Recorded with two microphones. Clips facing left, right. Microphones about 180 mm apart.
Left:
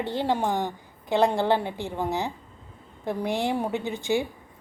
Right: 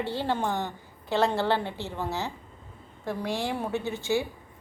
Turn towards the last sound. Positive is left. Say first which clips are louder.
# left 2 dB
turn(degrees=15)  # may be behind; listen again after turning